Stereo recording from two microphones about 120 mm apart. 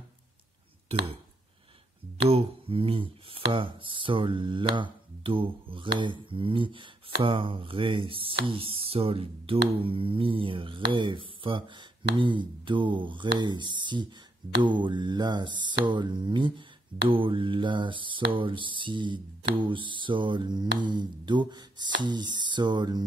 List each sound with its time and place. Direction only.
2.2 s speech: 55° right (ahead or behind)
14.6 s mantra: 40° right (ahead or behind)